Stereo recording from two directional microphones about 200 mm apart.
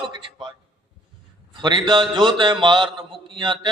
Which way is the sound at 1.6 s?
25° right (ahead or behind).